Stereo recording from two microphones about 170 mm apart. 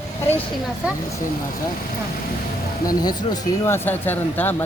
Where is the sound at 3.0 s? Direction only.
25° left (ahead or behind).